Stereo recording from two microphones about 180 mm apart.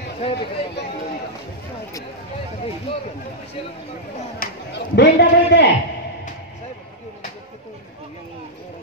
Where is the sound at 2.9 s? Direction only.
30° left (ahead or behind).